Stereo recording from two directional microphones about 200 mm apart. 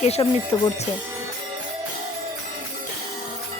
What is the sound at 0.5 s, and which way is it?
Speech, 15° left (ahead or behind).